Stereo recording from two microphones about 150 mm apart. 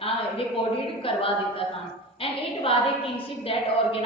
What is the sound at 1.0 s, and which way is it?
A woman's voice, 40° left (ahead or behind).